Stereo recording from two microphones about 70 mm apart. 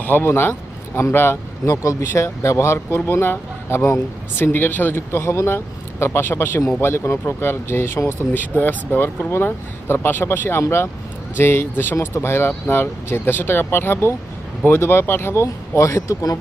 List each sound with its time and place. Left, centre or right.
0.0 s speech: left
1.6 s speech: left